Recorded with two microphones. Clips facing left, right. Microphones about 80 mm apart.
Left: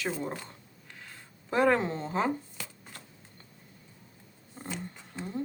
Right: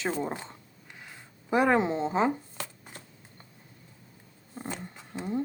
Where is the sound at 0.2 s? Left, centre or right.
Right.